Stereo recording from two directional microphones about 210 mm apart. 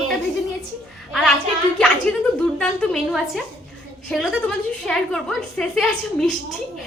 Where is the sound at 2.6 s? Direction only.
Centre (ahead or behind).